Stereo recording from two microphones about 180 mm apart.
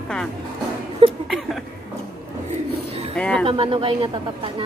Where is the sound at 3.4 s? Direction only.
30° right (ahead or behind).